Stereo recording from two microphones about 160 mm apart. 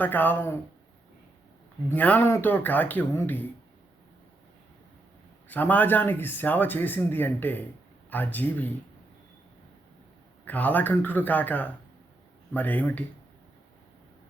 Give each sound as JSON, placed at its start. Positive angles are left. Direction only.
{"t": 0.0, "sound": "speech", "side_deg": 10}
{"t": 1.9, "sound": "speech", "side_deg": 10}
{"t": 5.5, "sound": "speech", "side_deg": 10}
{"t": 10.4, "sound": "speech", "side_deg": 10}